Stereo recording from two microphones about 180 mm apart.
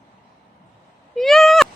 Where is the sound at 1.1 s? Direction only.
Centre (ahead or behind).